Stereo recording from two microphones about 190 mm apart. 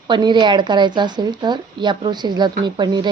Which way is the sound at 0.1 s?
25° right (ahead or behind).